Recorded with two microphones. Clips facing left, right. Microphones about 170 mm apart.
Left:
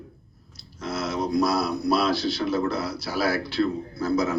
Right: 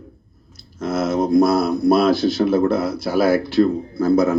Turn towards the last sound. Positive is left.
turn(degrees=-50)  # may be behind; listen again after turning